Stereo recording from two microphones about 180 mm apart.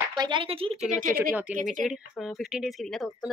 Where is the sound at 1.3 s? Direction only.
10° right (ahead or behind).